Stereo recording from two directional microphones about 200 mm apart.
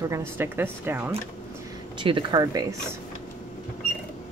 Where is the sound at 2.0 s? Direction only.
25° right (ahead or behind).